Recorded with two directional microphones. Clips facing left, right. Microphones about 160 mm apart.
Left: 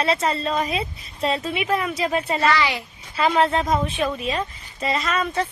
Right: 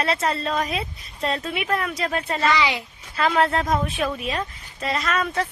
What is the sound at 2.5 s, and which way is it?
Speech, 20° right (ahead or behind).